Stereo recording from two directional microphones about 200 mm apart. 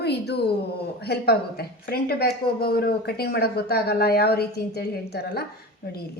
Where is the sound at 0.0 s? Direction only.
55° left (ahead or behind).